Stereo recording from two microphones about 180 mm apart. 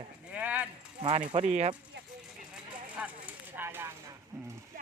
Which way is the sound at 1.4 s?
40° right (ahead or behind).